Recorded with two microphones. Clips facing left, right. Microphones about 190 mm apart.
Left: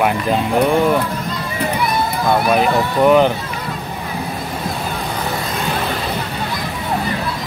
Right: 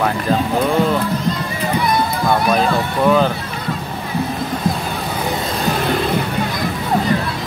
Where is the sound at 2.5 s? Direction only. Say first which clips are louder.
Left 1 dB; 15° left (ahead or behind).